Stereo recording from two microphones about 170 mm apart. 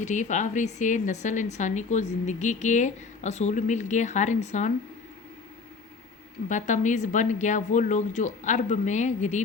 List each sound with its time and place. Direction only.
0.0 s a woman's voice: 45° left (ahead or behind)
6.5 s a woman's voice: 45° left (ahead or behind)